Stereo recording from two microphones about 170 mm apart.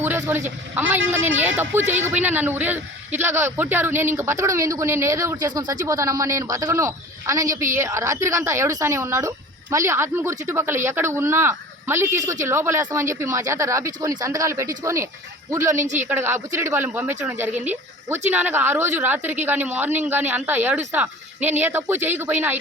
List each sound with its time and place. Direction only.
0.0 s a sound: 15° right (ahead or behind)
0.8 s speech: 10° right (ahead or behind)
15.8 s speech: 45° right (ahead or behind)
16.0 s speech: 15° right (ahead or behind)